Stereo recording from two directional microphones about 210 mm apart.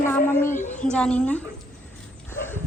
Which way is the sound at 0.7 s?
35° left (ahead or behind).